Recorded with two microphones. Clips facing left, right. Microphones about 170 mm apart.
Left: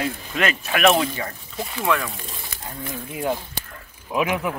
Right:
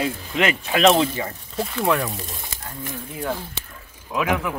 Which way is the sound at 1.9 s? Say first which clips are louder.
Right 1 dB; 40° right (ahead or behind).